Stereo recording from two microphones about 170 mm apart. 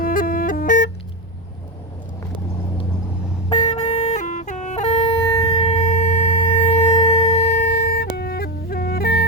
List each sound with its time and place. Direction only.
0.0 s music: 55° left (ahead or behind)
3.8 s music: 40° left (ahead or behind)
5.3 s shofar: 30° left (ahead or behind)
5.6 s wind instrument: 40° left (ahead or behind)
6.6 s wind instrument: 35° left (ahead or behind)
7.8 s music: 65° left (ahead or behind)